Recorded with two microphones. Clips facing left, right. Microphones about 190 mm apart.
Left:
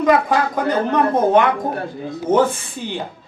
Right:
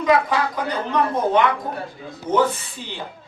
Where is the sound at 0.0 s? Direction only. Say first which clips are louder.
Left 3 dB; 45° left (ahead or behind).